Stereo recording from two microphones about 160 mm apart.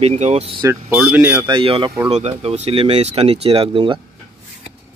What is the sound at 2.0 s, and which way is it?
Speech, 40° right (ahead or behind).